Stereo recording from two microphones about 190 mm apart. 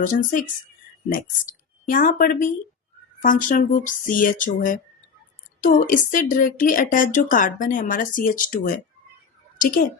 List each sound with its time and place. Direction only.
0.0 s speech: 45° left (ahead or behind)
1.9 s speech: 45° left (ahead or behind)